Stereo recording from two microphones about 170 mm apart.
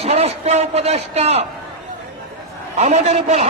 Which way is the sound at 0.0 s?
35° right (ahead or behind).